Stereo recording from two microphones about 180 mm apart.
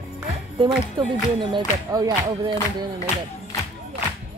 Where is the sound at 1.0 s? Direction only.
25° right (ahead or behind).